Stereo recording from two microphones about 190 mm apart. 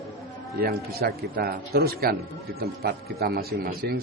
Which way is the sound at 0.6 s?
50° right (ahead or behind).